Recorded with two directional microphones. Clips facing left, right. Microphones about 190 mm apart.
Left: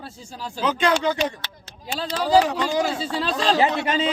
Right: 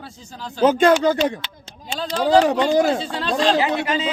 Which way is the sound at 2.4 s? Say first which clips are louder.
Right 6 dB; 55° right (ahead or behind).